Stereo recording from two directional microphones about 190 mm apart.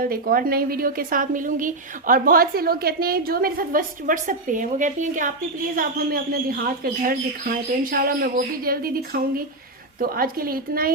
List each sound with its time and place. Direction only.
0.0 s a woman's voice: 50° right (ahead or behind)